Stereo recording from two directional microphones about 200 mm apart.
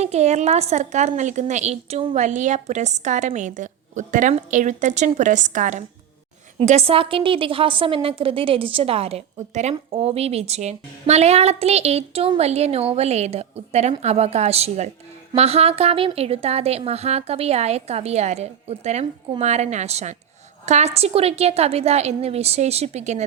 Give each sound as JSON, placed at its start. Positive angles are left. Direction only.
{"t": 0.0, "sound": "a woman's voice", "side_deg": -35}